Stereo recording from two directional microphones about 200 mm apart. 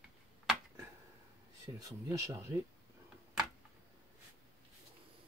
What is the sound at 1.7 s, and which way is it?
Speech, 15° right (ahead or behind).